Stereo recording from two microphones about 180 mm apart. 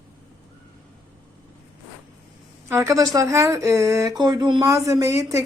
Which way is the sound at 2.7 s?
20° right (ahead or behind).